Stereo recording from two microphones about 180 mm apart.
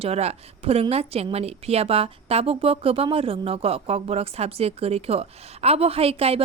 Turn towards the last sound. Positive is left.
turn(degrees=-35)  # may be behind; listen again after turning